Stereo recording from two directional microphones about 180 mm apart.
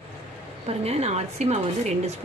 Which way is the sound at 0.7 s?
35° right (ahead or behind).